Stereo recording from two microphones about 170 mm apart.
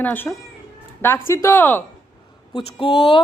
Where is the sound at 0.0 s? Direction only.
10° left (ahead or behind).